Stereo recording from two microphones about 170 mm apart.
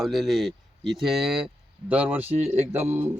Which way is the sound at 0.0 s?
Centre (ahead or behind).